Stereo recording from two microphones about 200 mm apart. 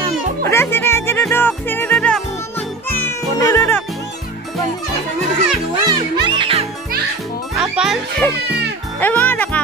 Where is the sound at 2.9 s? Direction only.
10° left (ahead or behind).